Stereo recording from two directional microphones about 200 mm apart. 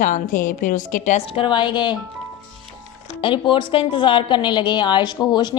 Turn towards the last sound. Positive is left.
turn(degrees=20)  # may be behind; listen again after turning